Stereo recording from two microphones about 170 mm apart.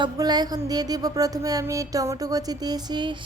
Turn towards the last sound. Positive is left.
turn(degrees=-25)  # may be behind; listen again after turning